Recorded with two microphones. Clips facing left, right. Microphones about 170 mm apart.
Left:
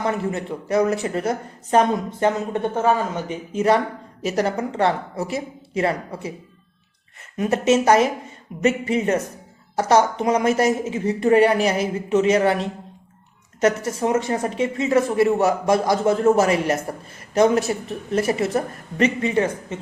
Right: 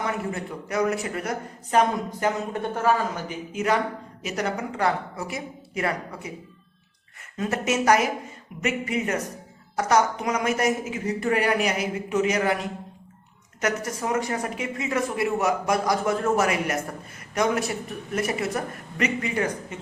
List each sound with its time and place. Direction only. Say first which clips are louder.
0.0 s a woman's voice: left 5 dB; 25° left (ahead or behind)
7.3 s a woman's voice: left 7 dB; 20° left (ahead or behind)